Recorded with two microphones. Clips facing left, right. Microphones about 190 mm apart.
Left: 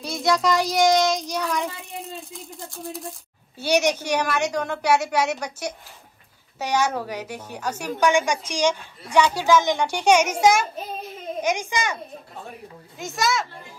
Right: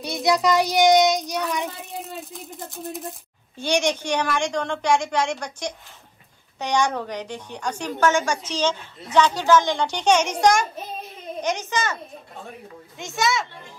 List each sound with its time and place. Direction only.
0.0 s child singing: centre (ahead or behind)
1.5 s a sound: centre (ahead or behind)
2.6 s speech: 20° right (ahead or behind)
3.0 s a woman's voice: 5° left (ahead or behind)
12.9 s a child's voice: centre (ahead or behind)